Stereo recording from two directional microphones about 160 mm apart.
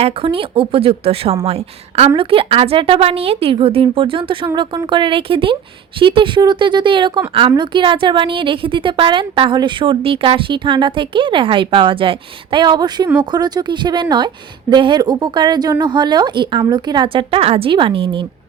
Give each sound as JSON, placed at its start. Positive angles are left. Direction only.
{"t": 0.0, "sound": "a woman's voice", "side_deg": -35}